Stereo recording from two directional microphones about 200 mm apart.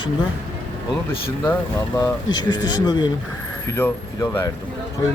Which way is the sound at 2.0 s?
20° left (ahead or behind).